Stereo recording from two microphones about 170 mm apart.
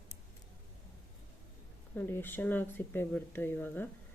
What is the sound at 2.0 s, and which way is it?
Speech, 15° left (ahead or behind).